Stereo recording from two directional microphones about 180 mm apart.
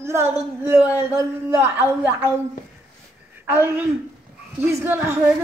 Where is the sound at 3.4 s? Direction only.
10° right (ahead or behind).